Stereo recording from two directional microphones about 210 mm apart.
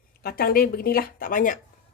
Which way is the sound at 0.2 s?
45° left (ahead or behind).